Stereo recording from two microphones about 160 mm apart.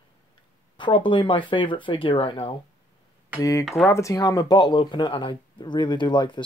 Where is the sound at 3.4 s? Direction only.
20° left (ahead or behind).